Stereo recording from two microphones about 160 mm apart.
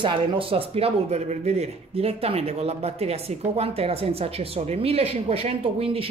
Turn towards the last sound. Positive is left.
turn(degrees=-40)  # may be behind; listen again after turning